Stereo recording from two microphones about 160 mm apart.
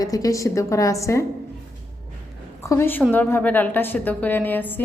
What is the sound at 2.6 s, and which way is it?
A woman's voice, 20° left (ahead or behind).